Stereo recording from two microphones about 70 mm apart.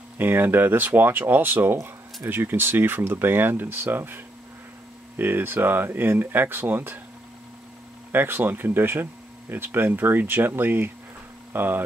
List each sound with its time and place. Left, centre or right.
0.2 s speech: right
8.1 s speech: right